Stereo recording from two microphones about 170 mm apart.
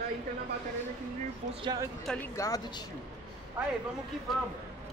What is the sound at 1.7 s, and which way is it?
Speech, 25° right (ahead or behind).